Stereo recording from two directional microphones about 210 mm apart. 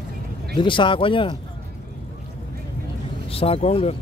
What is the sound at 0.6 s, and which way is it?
Speech, 25° left (ahead or behind).